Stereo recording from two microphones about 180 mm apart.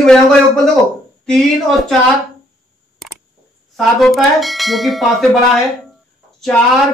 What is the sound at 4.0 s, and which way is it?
Speech, centre (ahead or behind).